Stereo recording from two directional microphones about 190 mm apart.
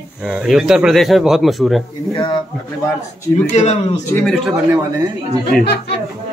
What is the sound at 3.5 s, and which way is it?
Speech, 35° left (ahead or behind).